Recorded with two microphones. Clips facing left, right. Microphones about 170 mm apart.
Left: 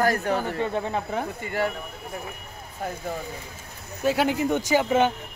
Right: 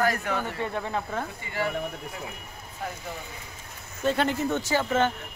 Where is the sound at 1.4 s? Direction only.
50° left (ahead or behind).